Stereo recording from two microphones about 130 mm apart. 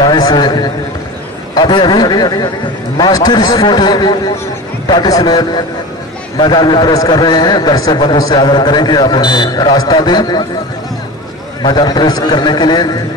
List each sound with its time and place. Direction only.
0.0 s a man's voice: 30° left (ahead or behind)
11.6 s a man's voice: 35° left (ahead or behind)